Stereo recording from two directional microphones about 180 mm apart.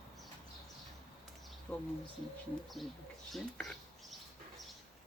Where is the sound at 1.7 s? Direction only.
5° left (ahead or behind).